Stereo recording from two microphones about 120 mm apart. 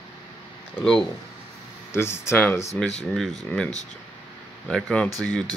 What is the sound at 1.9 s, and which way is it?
Speech, 20° left (ahead or behind).